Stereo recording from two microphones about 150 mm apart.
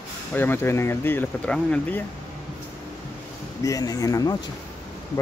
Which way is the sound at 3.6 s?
25° left (ahead or behind).